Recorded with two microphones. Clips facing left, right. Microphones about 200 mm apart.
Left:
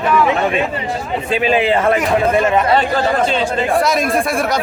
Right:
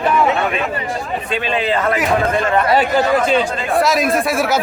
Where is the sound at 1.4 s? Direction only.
25° left (ahead or behind).